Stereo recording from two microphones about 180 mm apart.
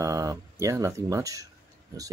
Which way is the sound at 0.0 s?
20° right (ahead or behind).